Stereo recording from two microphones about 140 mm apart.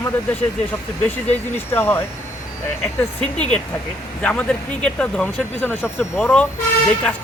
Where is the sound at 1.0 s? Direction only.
15° left (ahead or behind).